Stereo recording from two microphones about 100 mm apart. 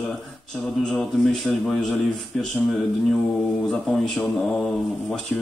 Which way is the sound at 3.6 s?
Centre (ahead or behind).